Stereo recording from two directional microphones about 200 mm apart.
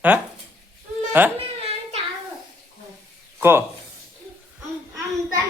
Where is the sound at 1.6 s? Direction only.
30° right (ahead or behind).